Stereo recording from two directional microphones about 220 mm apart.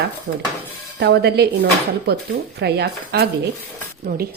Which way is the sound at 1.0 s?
50° right (ahead or behind).